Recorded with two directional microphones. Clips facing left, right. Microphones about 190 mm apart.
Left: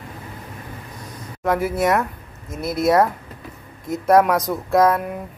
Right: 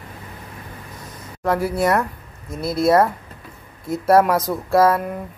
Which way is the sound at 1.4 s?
Centre (ahead or behind).